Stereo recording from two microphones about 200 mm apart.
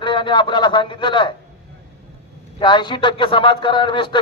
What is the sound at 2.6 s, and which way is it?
A man's voice, 25° left (ahead or behind).